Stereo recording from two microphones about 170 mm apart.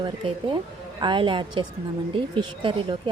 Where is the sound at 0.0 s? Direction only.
25° right (ahead or behind).